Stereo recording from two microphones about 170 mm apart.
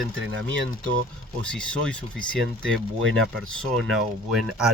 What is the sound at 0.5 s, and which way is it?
Speech, 90° right.